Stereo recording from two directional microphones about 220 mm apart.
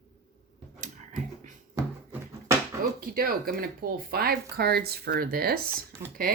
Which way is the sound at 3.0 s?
40° right (ahead or behind).